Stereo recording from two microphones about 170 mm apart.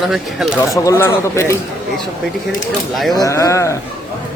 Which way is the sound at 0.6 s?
15° left (ahead or behind).